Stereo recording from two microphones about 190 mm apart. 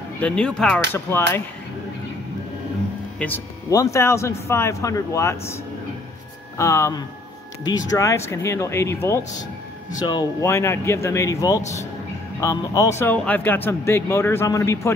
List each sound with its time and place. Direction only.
0.2 s speech: 5° left (ahead or behind)
3.2 s speech: 15° left (ahead or behind)
6.6 s speech: 15° left (ahead or behind)
11.6 s speech: 35° left (ahead or behind)
12.4 s speech: 15° left (ahead or behind)